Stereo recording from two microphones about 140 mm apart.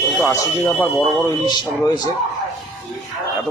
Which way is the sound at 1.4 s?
30° left (ahead or behind).